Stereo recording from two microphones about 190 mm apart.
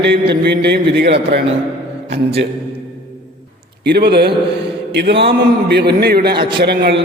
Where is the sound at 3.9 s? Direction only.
60° right (ahead or behind).